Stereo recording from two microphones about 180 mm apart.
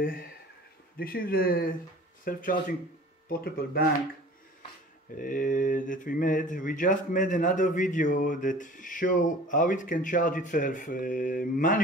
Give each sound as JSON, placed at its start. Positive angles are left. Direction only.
{"t": 0.9, "sound": "speech", "side_deg": 55}
{"t": 5.1, "sound": "speech", "side_deg": 50}